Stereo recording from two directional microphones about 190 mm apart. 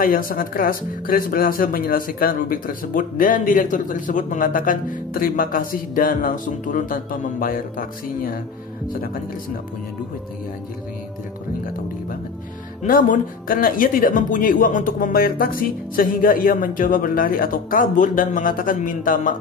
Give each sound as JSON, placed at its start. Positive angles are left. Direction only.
{"t": 0.0, "sound": "speech", "side_deg": 50}
{"t": 12.8, "sound": "speech", "side_deg": 45}